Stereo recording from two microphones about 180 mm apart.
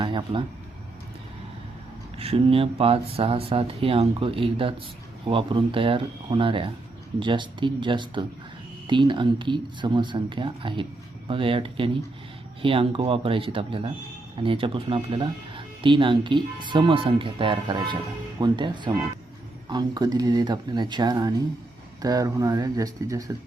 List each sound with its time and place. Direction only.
0.0 s speech: 25° right (ahead or behind)
2.1 s speech: 30° right (ahead or behind)